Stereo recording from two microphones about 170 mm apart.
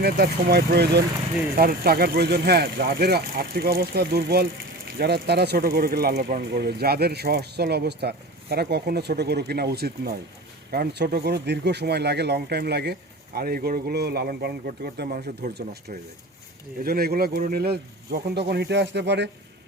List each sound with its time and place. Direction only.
0.0 s speech: 70° right (ahead or behind); by 19.3 s 90° right